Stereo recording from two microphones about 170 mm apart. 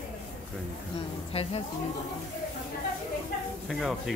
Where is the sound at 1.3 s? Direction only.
35° left (ahead or behind).